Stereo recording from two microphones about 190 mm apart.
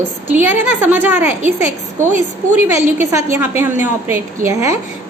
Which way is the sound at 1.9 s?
40° right (ahead or behind).